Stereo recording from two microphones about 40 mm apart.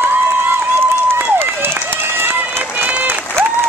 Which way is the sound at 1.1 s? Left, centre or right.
Right.